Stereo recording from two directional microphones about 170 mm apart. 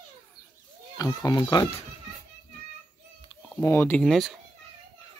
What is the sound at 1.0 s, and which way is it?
Speech, 20° left (ahead or behind).